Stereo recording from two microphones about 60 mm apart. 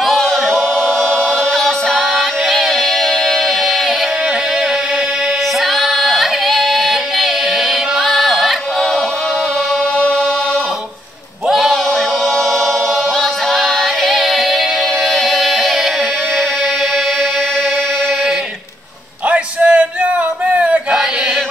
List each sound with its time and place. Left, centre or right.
0.0 s choir: centre
1.9 s music: centre
5.8 s music: centre
11.4 s a sound: centre
13.2 s music: centre
19.2 s a sound: centre
20.5 s music: centre